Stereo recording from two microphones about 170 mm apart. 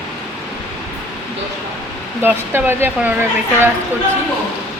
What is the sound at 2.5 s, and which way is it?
Speech, 15° right (ahead or behind).